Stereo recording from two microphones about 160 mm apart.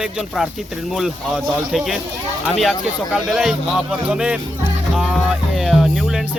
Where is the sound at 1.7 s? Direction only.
Centre (ahead or behind).